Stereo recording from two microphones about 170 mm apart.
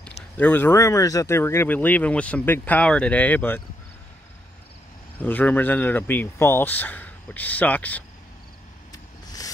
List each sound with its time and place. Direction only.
0.4 s speech: 10° left (ahead or behind)
5.2 s speech: 10° left (ahead or behind)
8.9 s vehicle: 20° left (ahead or behind)